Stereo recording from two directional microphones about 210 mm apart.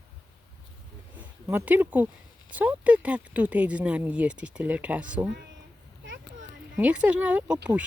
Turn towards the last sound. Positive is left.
turn(degrees=-5)  # may be behind; listen again after turning